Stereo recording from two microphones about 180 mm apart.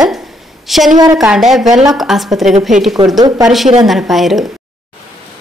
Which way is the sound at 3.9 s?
Centre (ahead or behind).